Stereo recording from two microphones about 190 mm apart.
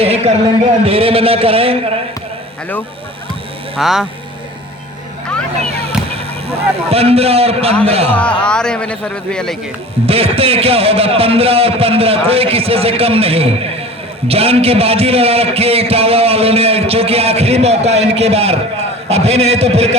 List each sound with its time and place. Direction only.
0.0 s a man's voice: 30° right (ahead or behind)
3.8 s speech: centre (ahead or behind)
6.5 s a man's voice: 30° right (ahead or behind)
8.1 s speech: 5° left (ahead or behind)
10.1 s a man's voice: 30° right (ahead or behind)